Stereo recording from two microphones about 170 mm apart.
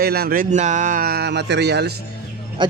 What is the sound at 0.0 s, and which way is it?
Speech, 65° right (ahead or behind).